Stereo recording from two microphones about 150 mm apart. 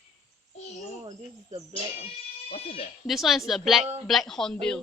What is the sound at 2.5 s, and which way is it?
Speech, 45° left (ahead or behind).